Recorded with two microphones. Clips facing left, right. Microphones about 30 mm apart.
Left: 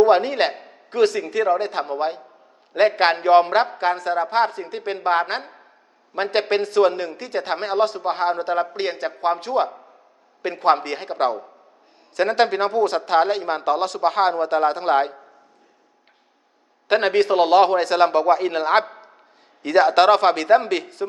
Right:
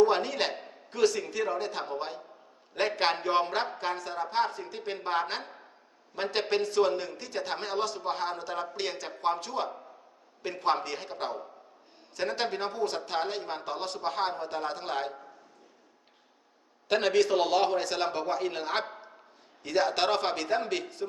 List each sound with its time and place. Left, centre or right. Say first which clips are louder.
0.0 s speech: left 9 dB; left
6.5 s speech: left 7 dB; left
16.9 s speech: left 7 dB; left